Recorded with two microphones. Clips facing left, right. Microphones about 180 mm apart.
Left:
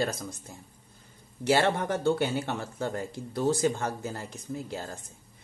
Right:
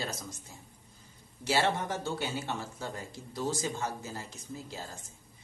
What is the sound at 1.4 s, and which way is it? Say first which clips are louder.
A man's voice: left 5 dB; 60° left (ahead or behind).